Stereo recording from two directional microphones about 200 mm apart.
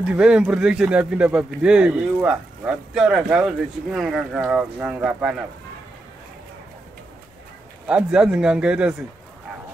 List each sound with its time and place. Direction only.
0.0 s speech: 5° right (ahead or behind)
7.8 s speech: 5° right (ahead or behind)